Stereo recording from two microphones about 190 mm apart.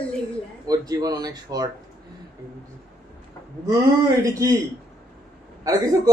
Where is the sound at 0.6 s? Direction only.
20° right (ahead or behind).